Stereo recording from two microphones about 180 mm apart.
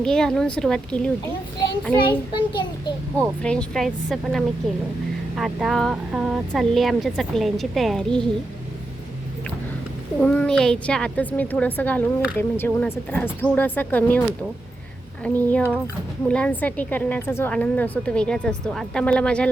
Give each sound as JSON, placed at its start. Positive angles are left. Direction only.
{"t": 0.0, "sound": "speech", "side_deg": 5}
{"t": 2.0, "sound": "child singing", "side_deg": 25}
{"t": 3.2, "sound": "speech", "side_deg": 5}
{"t": 10.2, "sound": "a woman's voice", "side_deg": 5}